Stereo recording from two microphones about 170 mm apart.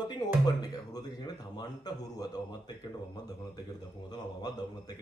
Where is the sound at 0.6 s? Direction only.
25° left (ahead or behind).